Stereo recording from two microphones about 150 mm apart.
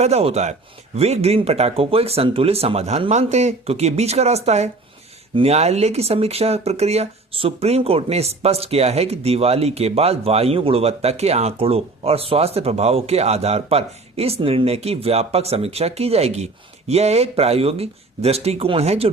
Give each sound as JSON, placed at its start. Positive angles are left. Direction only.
{"t": 0.0, "sound": "speech", "side_deg": -45}